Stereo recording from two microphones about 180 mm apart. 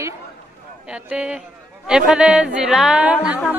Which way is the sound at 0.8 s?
5° right (ahead or behind).